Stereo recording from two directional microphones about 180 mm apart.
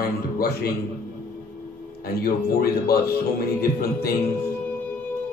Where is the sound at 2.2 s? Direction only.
55° left (ahead or behind).